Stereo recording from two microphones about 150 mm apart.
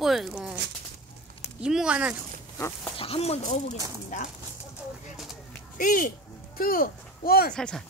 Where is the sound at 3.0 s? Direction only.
40° left (ahead or behind).